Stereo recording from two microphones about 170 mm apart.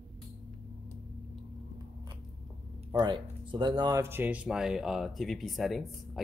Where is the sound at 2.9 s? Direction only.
25° right (ahead or behind).